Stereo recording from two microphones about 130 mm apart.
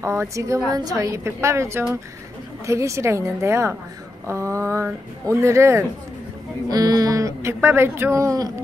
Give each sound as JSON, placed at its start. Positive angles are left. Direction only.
{"t": 0.0, "sound": "speech", "side_deg": -20}